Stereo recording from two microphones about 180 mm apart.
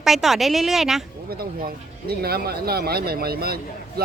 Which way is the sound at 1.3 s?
55° right (ahead or behind).